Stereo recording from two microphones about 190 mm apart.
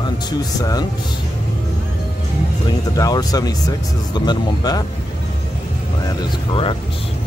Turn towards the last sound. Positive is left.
turn(degrees=30)  # may be behind; listen again after turning